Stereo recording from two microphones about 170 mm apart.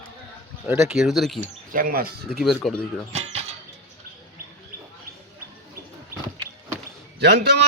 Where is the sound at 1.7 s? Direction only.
55° right (ahead or behind).